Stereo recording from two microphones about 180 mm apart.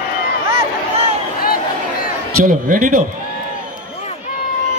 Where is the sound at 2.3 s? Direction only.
50° right (ahead or behind).